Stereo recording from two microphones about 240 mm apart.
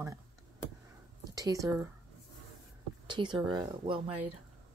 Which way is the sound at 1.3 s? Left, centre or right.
Centre.